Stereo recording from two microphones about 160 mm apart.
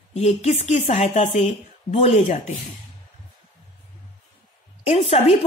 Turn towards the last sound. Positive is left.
turn(degrees=40)  # may be behind; listen again after turning